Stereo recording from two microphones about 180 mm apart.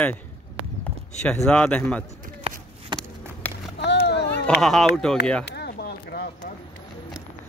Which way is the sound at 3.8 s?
70° left (ahead or behind).